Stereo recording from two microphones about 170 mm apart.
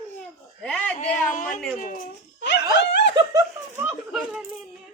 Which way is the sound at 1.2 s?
50° left (ahead or behind).